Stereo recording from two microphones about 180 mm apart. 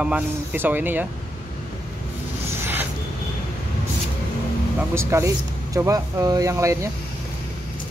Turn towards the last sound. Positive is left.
turn(degrees=-15)  # may be behind; listen again after turning